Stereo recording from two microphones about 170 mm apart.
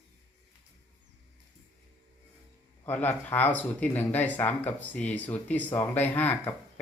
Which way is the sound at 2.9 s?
10° left (ahead or behind).